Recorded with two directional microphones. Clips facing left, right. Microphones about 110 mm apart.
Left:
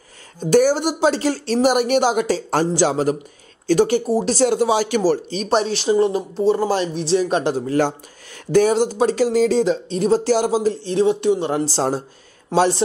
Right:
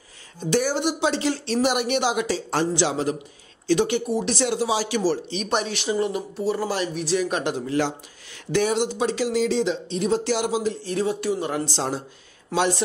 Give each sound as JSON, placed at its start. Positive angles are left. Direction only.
{"t": 0.4, "sound": "speech", "side_deg": 45}